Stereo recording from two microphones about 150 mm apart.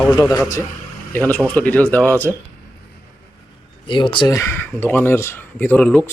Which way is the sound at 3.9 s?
35° left (ahead or behind).